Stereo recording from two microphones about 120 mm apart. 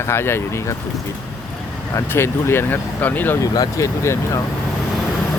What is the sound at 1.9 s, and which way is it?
Speech, 20° left (ahead or behind).